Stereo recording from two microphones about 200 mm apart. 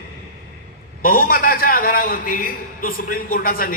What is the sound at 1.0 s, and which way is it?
A man's voice, 45° left (ahead or behind).